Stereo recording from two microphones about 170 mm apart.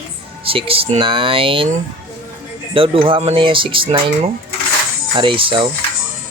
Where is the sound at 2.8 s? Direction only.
30° right (ahead or behind).